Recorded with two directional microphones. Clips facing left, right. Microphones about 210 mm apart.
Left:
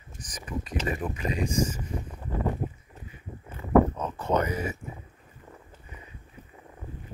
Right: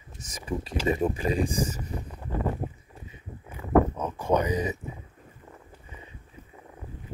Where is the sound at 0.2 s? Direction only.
25° right (ahead or behind).